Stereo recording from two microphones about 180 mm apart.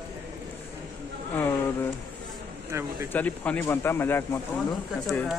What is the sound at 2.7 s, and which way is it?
Speech, 15° right (ahead or behind).